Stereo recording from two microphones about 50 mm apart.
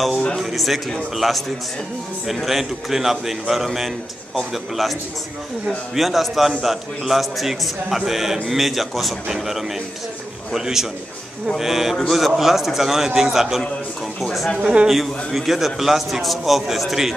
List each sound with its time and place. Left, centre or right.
0.4 s a man's voice: centre
5.7 s a man's voice: centre
14.6 s a man's voice: right
14.9 s a man's voice: centre